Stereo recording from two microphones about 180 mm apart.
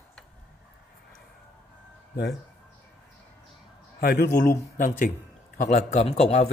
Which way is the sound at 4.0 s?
50° left (ahead or behind).